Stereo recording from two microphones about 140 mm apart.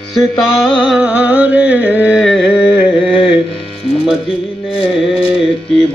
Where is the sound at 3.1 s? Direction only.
35° left (ahead or behind).